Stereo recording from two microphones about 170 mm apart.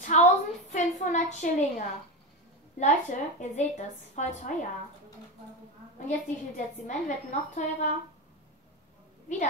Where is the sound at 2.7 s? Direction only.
45° left (ahead or behind).